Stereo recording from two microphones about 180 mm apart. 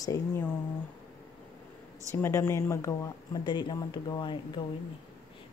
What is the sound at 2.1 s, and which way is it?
Speech, 15° left (ahead or behind).